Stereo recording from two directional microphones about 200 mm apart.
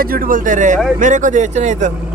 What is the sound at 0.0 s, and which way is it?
Speech, 45° right (ahead or behind).